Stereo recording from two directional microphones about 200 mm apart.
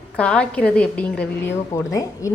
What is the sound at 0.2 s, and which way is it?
A woman's voice, 5° left (ahead or behind).